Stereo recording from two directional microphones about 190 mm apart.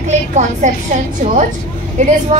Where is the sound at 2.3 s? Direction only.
40° right (ahead or behind).